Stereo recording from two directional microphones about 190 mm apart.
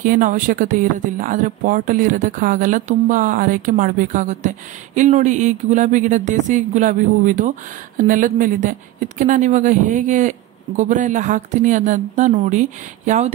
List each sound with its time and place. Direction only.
0.0 s speech: 45° right (ahead or behind)